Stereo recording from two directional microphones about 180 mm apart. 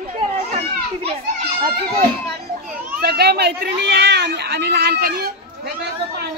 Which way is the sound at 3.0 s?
65° right (ahead or behind).